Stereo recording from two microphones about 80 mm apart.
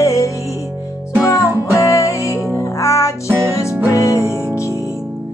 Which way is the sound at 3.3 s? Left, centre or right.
Right.